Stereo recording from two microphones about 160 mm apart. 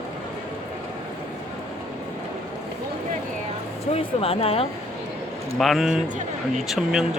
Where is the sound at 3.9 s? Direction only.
35° left (ahead or behind).